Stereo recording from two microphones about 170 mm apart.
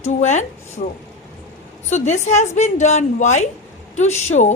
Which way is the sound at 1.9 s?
45° left (ahead or behind).